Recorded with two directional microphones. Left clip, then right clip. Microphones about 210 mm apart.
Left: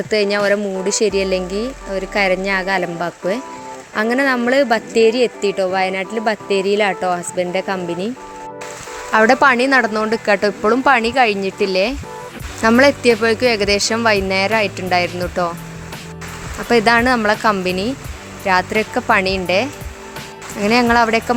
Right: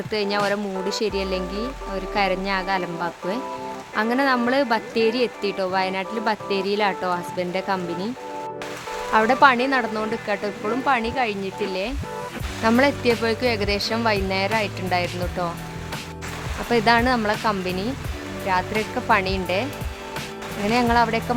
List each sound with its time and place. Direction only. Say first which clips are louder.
0.1 s speech: left 7 dB; 15° left (ahead or behind)
9.1 s speech: left 4 dB; 25° left (ahead or behind)
16.6 s speech: left 5 dB; 20° left (ahead or behind)
20.7 s speech: left 6 dB; 20° left (ahead or behind)